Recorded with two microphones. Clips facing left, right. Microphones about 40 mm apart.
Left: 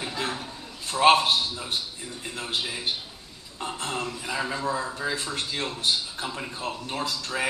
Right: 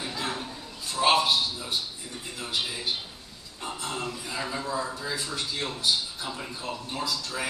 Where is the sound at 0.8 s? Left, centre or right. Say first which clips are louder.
Left 4 dB; left.